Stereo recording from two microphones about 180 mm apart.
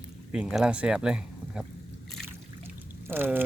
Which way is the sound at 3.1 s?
10° right (ahead or behind).